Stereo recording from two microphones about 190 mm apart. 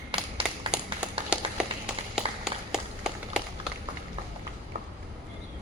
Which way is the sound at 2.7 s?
5° right (ahead or behind).